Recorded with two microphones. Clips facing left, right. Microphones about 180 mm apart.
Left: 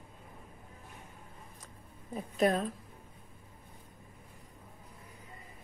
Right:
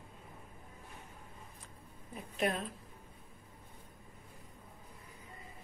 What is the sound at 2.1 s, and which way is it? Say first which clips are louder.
Speech: left 6 dB; 40° left (ahead or behind).